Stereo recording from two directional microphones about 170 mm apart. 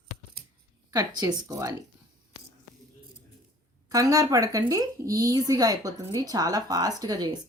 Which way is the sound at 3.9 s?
20° right (ahead or behind).